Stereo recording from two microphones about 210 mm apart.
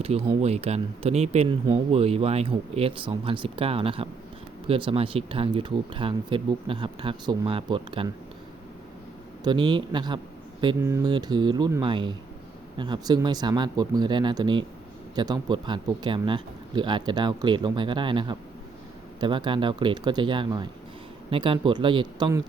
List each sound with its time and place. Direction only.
0.0 s speech: 30° right (ahead or behind)
9.4 s speech: 20° right (ahead or behind)